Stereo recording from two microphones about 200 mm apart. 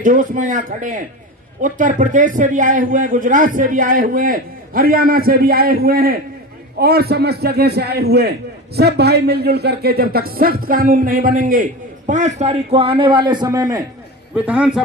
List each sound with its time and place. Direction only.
0.0 s a man's voice: 40° right (ahead or behind); by 14.8 s 5° right (ahead or behind)